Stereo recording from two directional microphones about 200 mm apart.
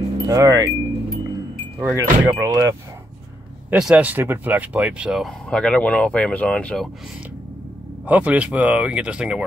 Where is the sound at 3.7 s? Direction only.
5° right (ahead or behind).